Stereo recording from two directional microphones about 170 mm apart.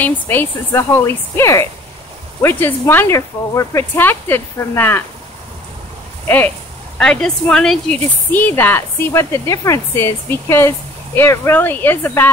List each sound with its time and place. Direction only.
0.0 s speech: 10° left (ahead or behind)
6.2 s speech: 10° left (ahead or behind)